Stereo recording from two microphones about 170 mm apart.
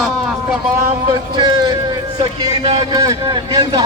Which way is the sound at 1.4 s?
25° right (ahead or behind).